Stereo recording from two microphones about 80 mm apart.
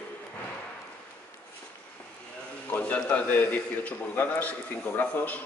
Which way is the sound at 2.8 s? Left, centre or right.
Centre.